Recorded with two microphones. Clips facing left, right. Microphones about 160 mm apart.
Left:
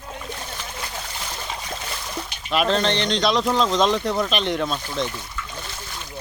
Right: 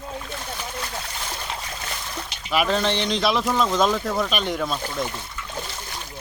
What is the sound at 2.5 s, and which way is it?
Speech, 5° right (ahead or behind).